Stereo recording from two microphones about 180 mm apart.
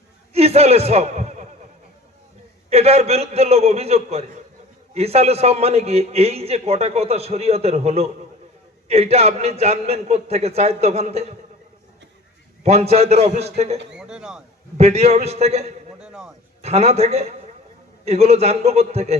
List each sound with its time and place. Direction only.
0.3 s a man's voice: 35° right (ahead or behind)
2.6 s a man's voice: 35° right (ahead or behind)
12.6 s a man's voice: 35° right (ahead or behind)
13.9 s speech: 5° right (ahead or behind)
14.8 s a man's voice: 35° right (ahead or behind)
16.0 s music: 5° right (ahead or behind)
16.6 s a man's voice: 35° right (ahead or behind)